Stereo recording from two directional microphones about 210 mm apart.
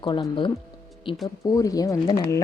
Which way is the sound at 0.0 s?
20° left (ahead or behind).